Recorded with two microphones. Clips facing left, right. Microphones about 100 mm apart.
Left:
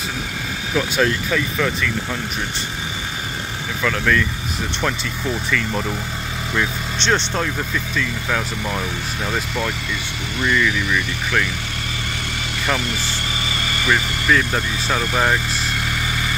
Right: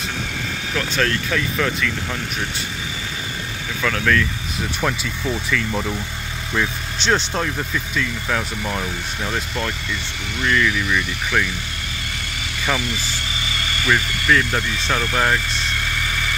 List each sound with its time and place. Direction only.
0.7 s speech: 10° left (ahead or behind)
3.8 s speech: 5° left (ahead or behind)
13.8 s speech: 5° left (ahead or behind)